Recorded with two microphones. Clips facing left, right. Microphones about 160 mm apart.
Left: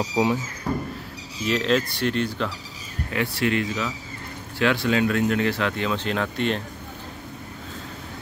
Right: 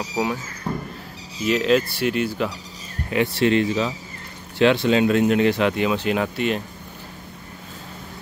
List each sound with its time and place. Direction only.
0.1 s speech: 20° left (ahead or behind)
1.4 s speech: 5° right (ahead or behind)
3.1 s speech: 25° right (ahead or behind); by 6.6 s 5° right (ahead or behind)